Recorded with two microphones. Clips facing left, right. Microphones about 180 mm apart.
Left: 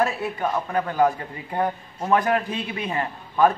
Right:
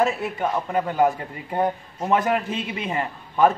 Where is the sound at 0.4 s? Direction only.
15° right (ahead or behind).